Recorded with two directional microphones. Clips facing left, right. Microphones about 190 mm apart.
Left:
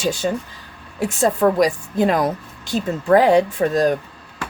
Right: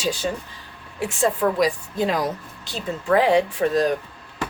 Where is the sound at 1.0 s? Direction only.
40° left (ahead or behind).